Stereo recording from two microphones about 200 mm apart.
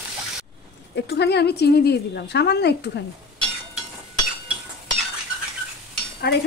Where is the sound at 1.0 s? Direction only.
55° left (ahead or behind).